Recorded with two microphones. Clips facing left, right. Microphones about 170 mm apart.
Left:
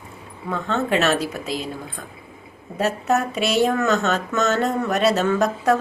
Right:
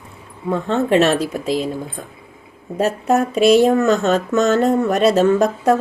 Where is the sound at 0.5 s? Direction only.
40° right (ahead or behind).